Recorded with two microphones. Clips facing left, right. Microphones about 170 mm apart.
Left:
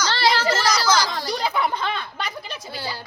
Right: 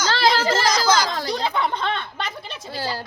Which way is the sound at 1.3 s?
5° left (ahead or behind).